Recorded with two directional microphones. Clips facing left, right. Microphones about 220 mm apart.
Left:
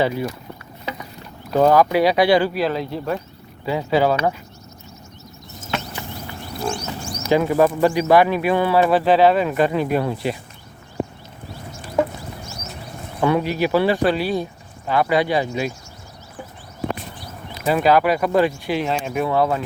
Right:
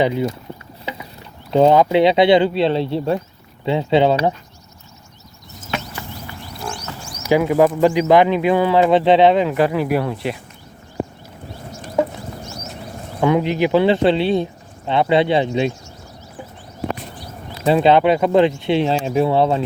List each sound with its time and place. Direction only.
0.0 s speech: 20° right (ahead or behind)
1.5 s speech: 25° right (ahead or behind)
7.2 s speech: 10° right (ahead or behind)
10.0 s speech: centre (ahead or behind)
13.1 s speech: 15° right (ahead or behind)
17.6 s speech: 25° right (ahead or behind)